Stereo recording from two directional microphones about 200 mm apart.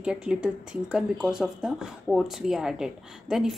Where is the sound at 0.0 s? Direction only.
5° right (ahead or behind).